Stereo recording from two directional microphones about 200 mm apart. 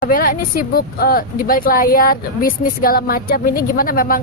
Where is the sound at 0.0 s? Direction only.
45° left (ahead or behind).